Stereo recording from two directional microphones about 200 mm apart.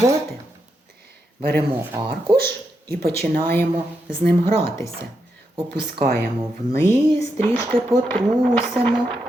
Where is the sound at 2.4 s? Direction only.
50° right (ahead or behind).